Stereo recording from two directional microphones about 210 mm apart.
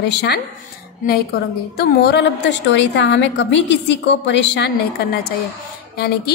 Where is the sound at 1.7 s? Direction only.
45° left (ahead or behind).